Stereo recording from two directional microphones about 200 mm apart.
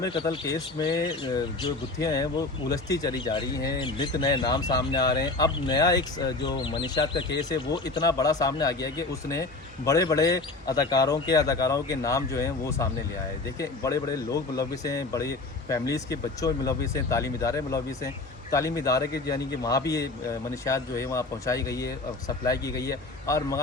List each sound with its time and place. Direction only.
0.0 s speech: 20° left (ahead or behind)